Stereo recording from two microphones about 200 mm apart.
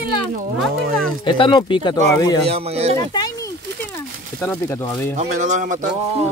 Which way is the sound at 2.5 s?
30° right (ahead or behind).